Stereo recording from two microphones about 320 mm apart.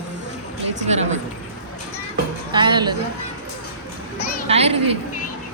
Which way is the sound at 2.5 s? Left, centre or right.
Centre.